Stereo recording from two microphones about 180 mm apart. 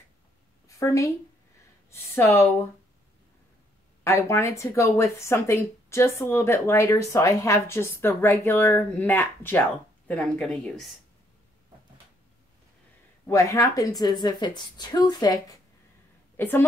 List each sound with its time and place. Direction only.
0.7 s a woman's voice: 15° left (ahead or behind)
4.0 s speech: 15° left (ahead or behind)
13.3 s a woman's voice: 15° left (ahead or behind)